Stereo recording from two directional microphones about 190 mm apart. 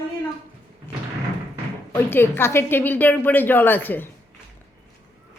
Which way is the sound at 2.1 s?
10° left (ahead or behind).